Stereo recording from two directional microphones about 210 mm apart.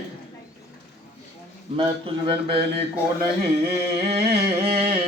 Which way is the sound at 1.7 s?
25° right (ahead or behind).